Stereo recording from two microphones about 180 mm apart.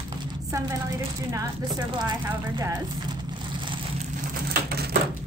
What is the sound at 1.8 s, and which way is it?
A woman's voice, 25° right (ahead or behind).